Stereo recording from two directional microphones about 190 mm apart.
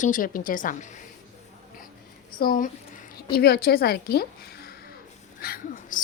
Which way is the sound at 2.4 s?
50° left (ahead or behind).